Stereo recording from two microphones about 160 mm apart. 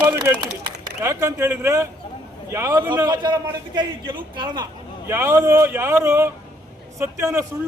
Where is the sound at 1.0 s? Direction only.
15° right (ahead or behind).